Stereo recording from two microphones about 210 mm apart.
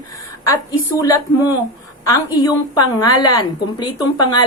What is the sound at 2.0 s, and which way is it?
A woman's voice, 15° left (ahead or behind).